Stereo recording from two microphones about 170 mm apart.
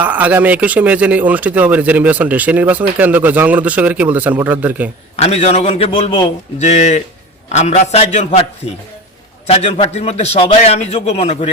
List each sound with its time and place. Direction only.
0.0 s speech: 10° right (ahead or behind)
5.1 s a man's voice: 40° left (ahead or behind)
6.6 s a man's voice: 45° left (ahead or behind)
9.5 s a man's voice: 35° left (ahead or behind)